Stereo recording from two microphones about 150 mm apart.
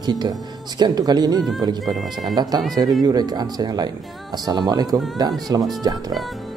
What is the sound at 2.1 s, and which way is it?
Speech, 25° right (ahead or behind).